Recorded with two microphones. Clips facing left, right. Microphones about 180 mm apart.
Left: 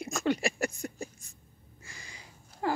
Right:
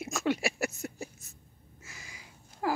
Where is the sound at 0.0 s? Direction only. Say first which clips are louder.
Left 1 dB; centre (ahead or behind).